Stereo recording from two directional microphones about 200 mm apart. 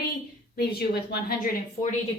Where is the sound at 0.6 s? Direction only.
50° left (ahead or behind).